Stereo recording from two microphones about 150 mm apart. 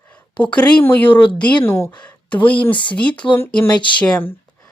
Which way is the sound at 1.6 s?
15° left (ahead or behind).